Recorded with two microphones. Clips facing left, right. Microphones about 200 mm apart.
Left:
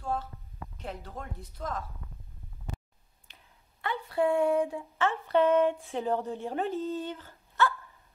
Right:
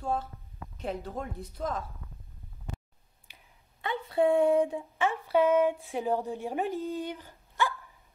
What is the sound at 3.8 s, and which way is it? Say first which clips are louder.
Speech: right 2 dB; 20° right (ahead or behind).